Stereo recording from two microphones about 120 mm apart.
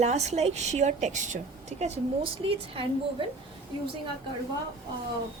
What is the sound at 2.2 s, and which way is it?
Speech, 50° right (ahead or behind).